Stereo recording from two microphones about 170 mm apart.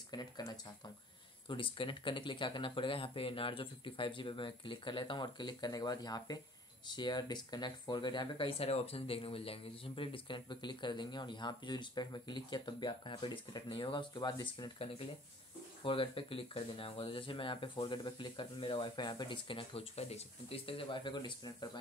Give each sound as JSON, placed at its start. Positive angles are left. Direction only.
{"t": 0.1, "sound": "speech", "side_deg": 25}